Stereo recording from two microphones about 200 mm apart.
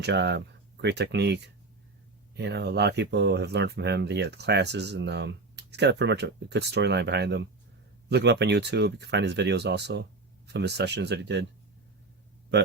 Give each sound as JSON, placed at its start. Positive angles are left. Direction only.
{"t": 0.0, "sound": "speech", "side_deg": -55}
{"t": 2.4, "sound": "speech", "side_deg": -55}